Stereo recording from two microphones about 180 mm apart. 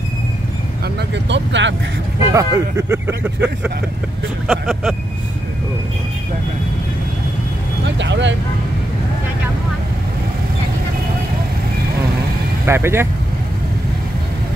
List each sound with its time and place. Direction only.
1.1 s speech: 80° right
2.3 s speech: 15° right (ahead or behind); by 4.9 s centre (ahead or behind)
7.8 s speech: 80° right
12.6 s speech: 15° right (ahead or behind)